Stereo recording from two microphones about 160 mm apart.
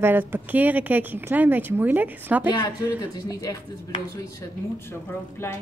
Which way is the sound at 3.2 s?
25° left (ahead or behind).